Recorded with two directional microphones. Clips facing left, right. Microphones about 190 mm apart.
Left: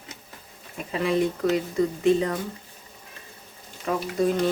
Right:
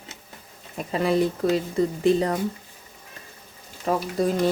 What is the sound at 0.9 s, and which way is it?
Speech, 40° right (ahead or behind).